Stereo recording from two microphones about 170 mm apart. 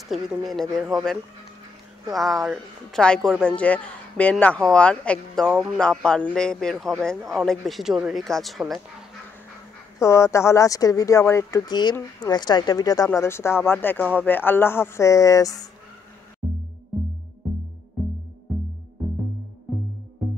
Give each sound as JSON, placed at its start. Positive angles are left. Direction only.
{"t": 0.5, "sound": "a man's voice", "side_deg": 0}
{"t": 2.0, "sound": "a man's voice", "side_deg": 0}
{"t": 9.9, "sound": "speech", "side_deg": 15}